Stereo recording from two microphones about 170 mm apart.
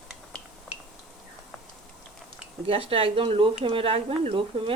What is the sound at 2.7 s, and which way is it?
Speech, 35° right (ahead or behind).